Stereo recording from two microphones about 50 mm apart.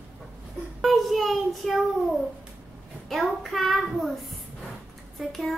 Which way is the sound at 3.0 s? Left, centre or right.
Centre.